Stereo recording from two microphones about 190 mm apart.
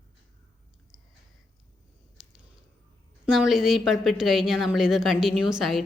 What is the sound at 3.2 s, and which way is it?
A woman's voice, 5° right (ahead or behind).